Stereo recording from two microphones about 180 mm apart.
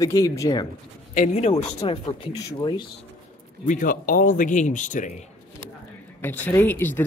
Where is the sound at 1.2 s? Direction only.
45° left (ahead or behind).